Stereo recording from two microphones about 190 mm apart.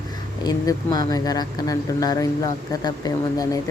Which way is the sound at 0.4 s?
20° left (ahead or behind).